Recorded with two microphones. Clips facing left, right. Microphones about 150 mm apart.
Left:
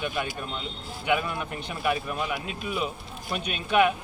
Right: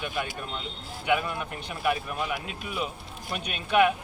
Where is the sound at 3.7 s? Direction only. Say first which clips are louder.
Even; 5° right (ahead or behind).